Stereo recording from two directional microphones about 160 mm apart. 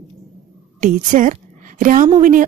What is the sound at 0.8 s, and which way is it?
A woman's voice, 55° right (ahead or behind).